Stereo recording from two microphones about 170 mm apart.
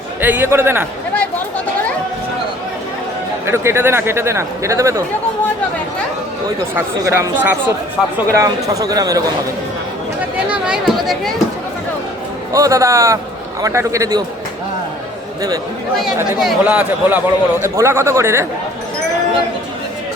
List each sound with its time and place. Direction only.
0.2 s a man's voice: 10° right (ahead or behind)
1.1 s a sound: 10° left (ahead or behind)
3.4 s a man's voice: 15° right (ahead or behind)
6.7 s a man's voice: 15° right (ahead or behind)
10.3 s chatter: 5° right (ahead or behind)
12.5 s speech: 20° right (ahead or behind)
16.4 s a man's voice: 5° right (ahead or behind)